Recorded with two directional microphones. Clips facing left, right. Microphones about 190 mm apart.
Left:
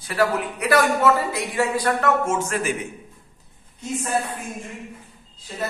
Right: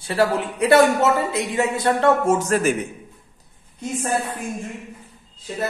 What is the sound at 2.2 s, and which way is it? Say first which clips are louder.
Speech: right 5 dB; 35° right (ahead or behind).